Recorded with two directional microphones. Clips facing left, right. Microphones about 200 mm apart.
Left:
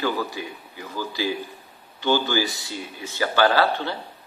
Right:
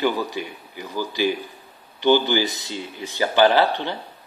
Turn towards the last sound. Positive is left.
turn(degrees=-15)  # may be behind; listen again after turning